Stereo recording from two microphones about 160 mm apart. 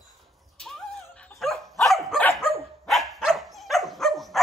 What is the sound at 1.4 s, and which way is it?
Dog, centre (ahead or behind).